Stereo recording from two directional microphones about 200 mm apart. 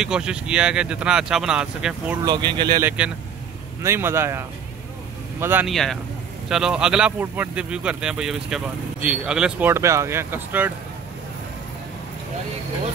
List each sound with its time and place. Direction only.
0.0 s a man's voice: 5° right (ahead or behind)
2.2 s speech: 20° right (ahead or behind)
2.8 s speech: 10° right (ahead or behind)
5.7 s a man's voice: centre (ahead or behind)